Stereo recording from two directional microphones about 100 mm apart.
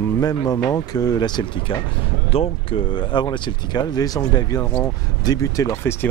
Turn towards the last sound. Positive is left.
turn(degrees=20)  # may be behind; listen again after turning